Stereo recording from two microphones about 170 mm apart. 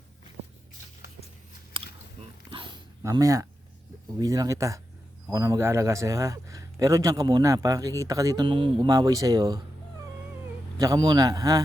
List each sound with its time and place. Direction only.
1.7 s biting: 30° right (ahead or behind)
2.5 s a sound: 30° right (ahead or behind)
3.0 s a man's voice: 20° right (ahead or behind)
10.8 s a man's voice: 20° right (ahead or behind)